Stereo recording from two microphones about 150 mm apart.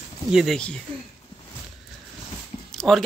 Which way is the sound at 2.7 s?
5° left (ahead or behind).